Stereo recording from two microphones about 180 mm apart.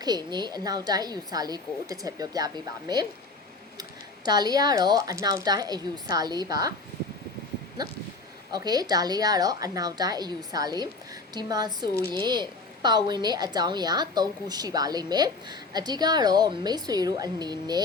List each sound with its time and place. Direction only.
0.0 s a woman's voice: 20° right (ahead or behind)
4.3 s a woman's voice: 20° right (ahead or behind)
8.5 s a woman's voice: 20° right (ahead or behind)